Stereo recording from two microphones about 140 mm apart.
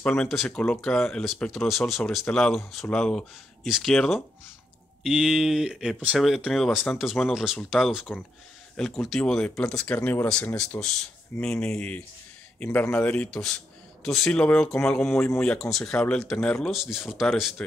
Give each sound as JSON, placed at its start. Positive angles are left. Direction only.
{"t": 0.0, "sound": "speech", "side_deg": 5}